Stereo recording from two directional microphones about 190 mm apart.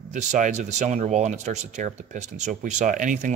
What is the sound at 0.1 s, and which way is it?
Speech, 40° right (ahead or behind).